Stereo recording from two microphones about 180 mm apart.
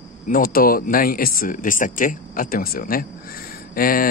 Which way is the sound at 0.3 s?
50° left (ahead or behind).